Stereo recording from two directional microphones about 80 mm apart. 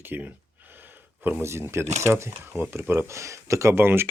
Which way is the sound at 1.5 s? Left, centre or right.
Right.